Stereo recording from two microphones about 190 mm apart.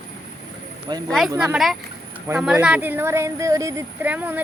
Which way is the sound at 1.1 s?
Centre (ahead or behind).